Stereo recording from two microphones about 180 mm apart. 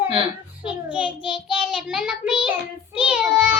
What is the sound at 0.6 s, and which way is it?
Speech, 5° right (ahead or behind).